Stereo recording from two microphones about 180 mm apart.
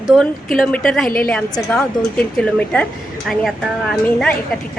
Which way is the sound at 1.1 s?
55° left (ahead or behind).